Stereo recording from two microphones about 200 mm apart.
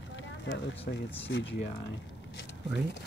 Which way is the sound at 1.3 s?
60° left (ahead or behind).